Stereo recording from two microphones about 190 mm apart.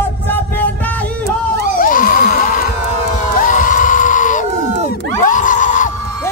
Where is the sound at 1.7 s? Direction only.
45° left (ahead or behind).